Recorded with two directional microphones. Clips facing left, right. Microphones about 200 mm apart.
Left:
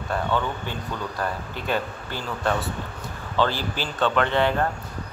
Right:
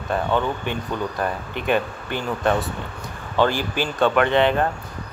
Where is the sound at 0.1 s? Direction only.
20° right (ahead or behind).